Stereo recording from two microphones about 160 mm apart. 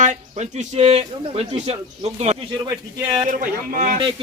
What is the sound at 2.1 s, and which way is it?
Speech, 45° right (ahead or behind).